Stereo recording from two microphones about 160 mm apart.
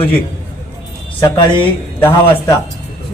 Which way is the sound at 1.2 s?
30° left (ahead or behind).